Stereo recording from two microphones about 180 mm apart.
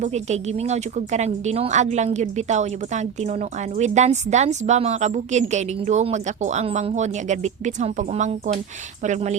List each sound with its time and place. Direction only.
0.0 s a woman's voice: 40° right (ahead or behind)